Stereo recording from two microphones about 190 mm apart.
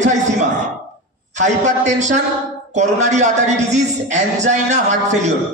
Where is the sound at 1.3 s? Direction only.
40° right (ahead or behind).